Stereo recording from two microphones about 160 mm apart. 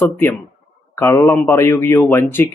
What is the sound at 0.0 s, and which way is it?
A man's voice, 10° left (ahead or behind).